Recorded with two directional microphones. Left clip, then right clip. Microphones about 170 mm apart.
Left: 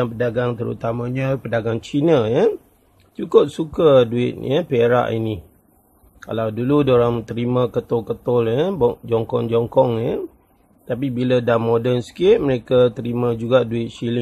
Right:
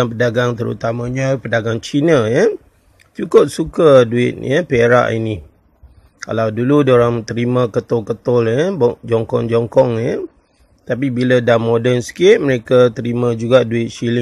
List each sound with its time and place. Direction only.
0.0 s speech: 25° right (ahead or behind)